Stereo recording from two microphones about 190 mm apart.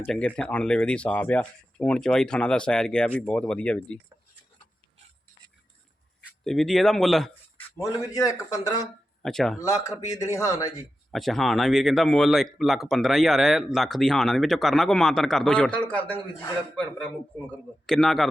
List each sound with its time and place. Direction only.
0.0 s speech: 5° left (ahead or behind)
6.4 s speech: centre (ahead or behind)
7.8 s a man's voice: 20° left (ahead or behind)
9.2 s speech: centre (ahead or behind)
9.6 s a man's voice: 15° left (ahead or behind)
11.1 s speech: centre (ahead or behind)